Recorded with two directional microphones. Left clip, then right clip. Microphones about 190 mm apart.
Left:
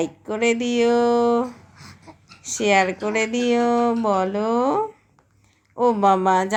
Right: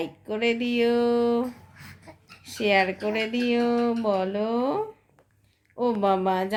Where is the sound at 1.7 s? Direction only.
5° right (ahead or behind).